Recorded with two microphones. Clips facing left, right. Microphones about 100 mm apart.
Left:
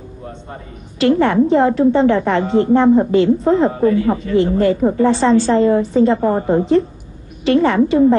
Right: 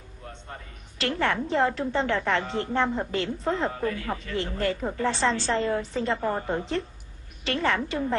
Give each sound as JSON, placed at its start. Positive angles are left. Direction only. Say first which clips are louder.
{"t": 0.2, "sound": "a woman's voice", "louder": "left 8 dB", "side_deg": 15}